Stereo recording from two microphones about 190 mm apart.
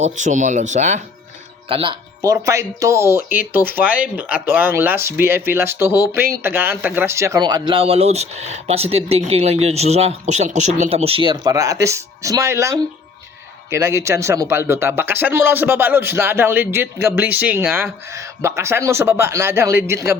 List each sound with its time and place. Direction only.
0.0 s speech: 40° right (ahead or behind)
1.7 s speech: 25° right (ahead or behind)